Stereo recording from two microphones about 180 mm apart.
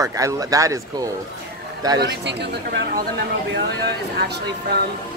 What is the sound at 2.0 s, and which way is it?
Speech, 70° right (ahead or behind).